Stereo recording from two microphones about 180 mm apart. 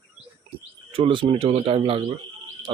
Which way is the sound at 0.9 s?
30° right (ahead or behind).